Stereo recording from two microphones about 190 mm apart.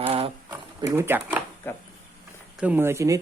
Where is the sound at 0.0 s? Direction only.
30° right (ahead or behind).